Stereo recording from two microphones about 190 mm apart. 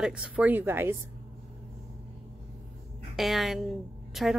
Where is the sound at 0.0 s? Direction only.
5° right (ahead or behind).